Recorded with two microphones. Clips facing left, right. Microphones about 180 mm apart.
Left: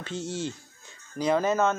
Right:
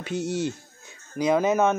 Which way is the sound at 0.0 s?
10° right (ahead or behind).